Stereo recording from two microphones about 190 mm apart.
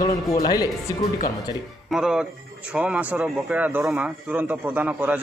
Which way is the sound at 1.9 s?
5° right (ahead or behind).